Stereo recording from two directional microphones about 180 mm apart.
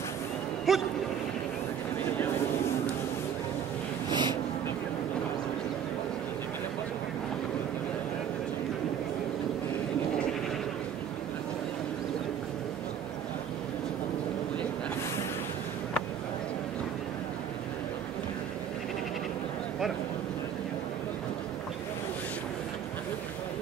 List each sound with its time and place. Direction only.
0.7 s speech: centre (ahead or behind)
4.1 s vehicle: 25° right (ahead or behind)